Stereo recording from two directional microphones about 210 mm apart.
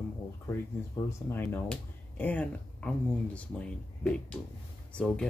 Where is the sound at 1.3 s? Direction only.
10° left (ahead or behind).